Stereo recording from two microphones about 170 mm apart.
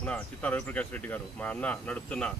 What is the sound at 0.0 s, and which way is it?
Speech, 10° left (ahead or behind).